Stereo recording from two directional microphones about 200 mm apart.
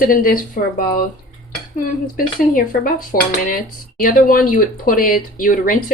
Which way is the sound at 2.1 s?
45° left (ahead or behind).